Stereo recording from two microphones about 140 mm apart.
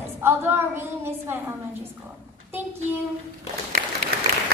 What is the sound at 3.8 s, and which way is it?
Applause, 90° right.